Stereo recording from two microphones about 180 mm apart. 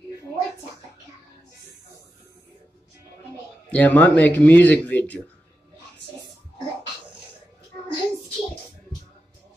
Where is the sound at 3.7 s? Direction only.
10° left (ahead or behind).